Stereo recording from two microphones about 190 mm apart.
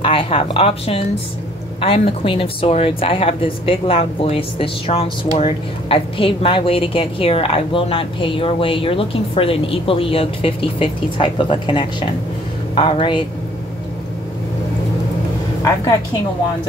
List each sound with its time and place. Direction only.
0.0 s speech: 30° left (ahead or behind)